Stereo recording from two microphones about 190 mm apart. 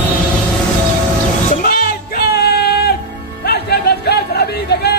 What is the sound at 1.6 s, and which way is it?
Music, 50° left (ahead or behind).